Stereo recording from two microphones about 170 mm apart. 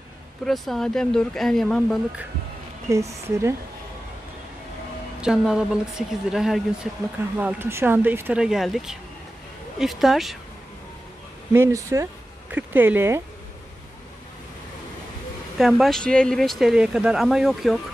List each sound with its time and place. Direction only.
0.5 s speech: centre (ahead or behind)
2.9 s speech: 15° right (ahead or behind)
5.2 s speech: 5° right (ahead or behind)
11.5 s speech: 15° right (ahead or behind)
15.5 s speech: centre (ahead or behind)